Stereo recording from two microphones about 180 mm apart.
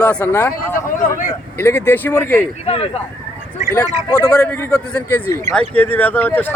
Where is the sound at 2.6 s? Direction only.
30° left (ahead or behind).